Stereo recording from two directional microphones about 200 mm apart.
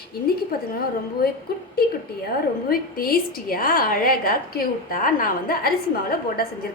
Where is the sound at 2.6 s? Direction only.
50° left (ahead or behind).